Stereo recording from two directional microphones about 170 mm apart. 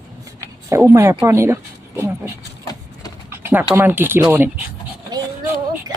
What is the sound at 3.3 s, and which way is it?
Typing, 15° right (ahead or behind).